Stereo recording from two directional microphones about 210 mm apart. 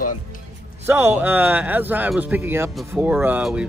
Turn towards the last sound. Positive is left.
turn(degrees=-5)  # may be behind; listen again after turning